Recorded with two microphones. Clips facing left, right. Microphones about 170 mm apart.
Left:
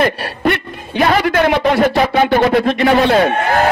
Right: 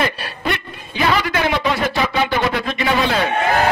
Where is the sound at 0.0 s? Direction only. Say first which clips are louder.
Left 7 dB; 55° left (ahead or behind).